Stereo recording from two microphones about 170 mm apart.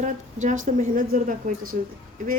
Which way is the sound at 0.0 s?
45° right (ahead or behind).